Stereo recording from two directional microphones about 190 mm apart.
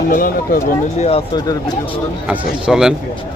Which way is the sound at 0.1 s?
45° left (ahead or behind).